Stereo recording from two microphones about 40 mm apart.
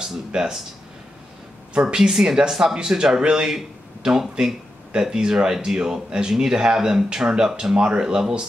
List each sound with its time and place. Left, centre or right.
0.0 s speech: centre
1.7 s speech: right
2.0 s speech: centre